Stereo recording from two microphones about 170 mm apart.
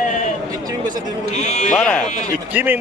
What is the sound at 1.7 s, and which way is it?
Speech, 5° left (ahead or behind).